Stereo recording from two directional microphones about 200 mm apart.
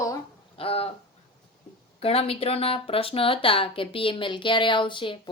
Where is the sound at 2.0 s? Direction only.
30° left (ahead or behind).